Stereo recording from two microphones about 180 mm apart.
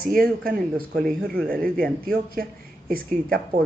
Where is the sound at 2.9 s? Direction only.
55° right (ahead or behind).